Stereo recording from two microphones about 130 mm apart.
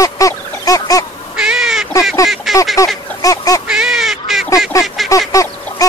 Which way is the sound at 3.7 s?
5° right (ahead or behind).